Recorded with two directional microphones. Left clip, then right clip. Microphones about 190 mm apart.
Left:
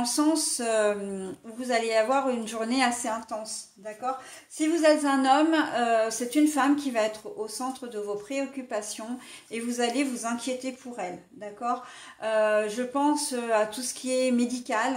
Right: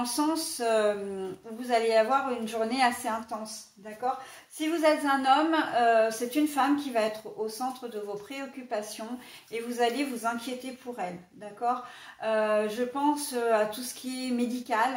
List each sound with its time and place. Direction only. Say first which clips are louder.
0.0 s speech: left 3 dB; 50° left (ahead or behind)
4.6 s a woman's voice: left 3 dB; 55° left (ahead or behind)
12.2 s speech: left 2 dB; 50° left (ahead or behind)